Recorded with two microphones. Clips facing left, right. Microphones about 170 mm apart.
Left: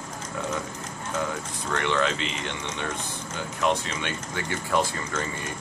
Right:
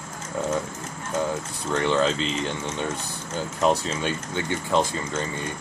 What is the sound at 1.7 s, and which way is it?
Speech, 30° right (ahead or behind).